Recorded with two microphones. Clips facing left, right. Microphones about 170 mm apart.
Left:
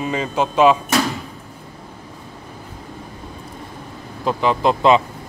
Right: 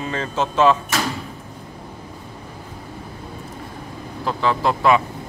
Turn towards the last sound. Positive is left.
turn(degrees=20)  # may be behind; listen again after turning